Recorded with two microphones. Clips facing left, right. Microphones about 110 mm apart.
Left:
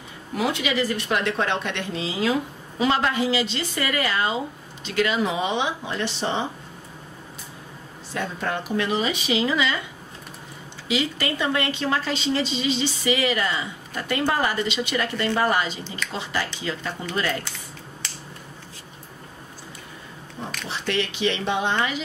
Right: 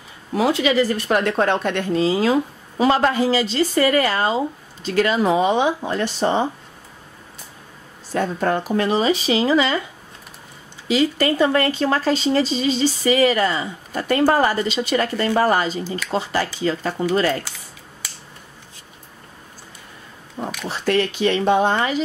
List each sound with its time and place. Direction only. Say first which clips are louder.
0.4 s speech: right 6 dB; 35° right (ahead or behind)
8.1 s speech: right 7 dB; 40° right (ahead or behind)
10.9 s speech: right 7 dB; 40° right (ahead or behind)
20.6 s speech: right 7 dB; 45° right (ahead or behind)